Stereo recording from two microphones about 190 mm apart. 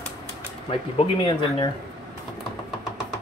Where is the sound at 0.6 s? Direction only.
30° left (ahead or behind).